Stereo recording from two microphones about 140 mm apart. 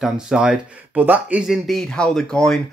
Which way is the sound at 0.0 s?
5° right (ahead or behind).